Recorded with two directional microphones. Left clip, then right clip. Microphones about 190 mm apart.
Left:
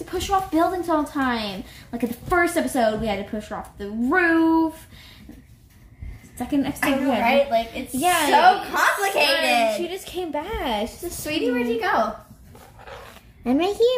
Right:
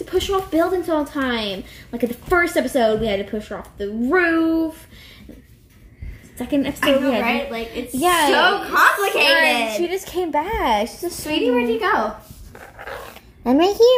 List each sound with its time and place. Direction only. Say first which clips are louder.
0.0 s a woman's voice: right 2 dB; 10° left (ahead or behind)
6.3 s a woman's voice: right 3 dB; 10° left (ahead or behind)
9.8 s a woman's voice: right 6 dB; centre (ahead or behind)
11.2 s a woman's voice: right 4 dB; 15° left (ahead or behind)
12.7 s dog: right 8 dB; 50° right (ahead or behind)
13.4 s a child's voice: right 5 dB; 5° left (ahead or behind)